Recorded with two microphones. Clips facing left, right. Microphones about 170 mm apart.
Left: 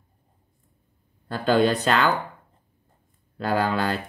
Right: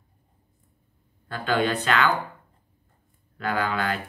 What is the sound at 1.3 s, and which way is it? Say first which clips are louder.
Speech: left 4 dB; 40° left (ahead or behind).